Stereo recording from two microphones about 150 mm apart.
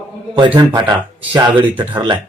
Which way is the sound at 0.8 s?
30° right (ahead or behind).